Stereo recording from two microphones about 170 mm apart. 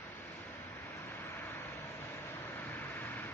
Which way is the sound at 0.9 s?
15° left (ahead or behind).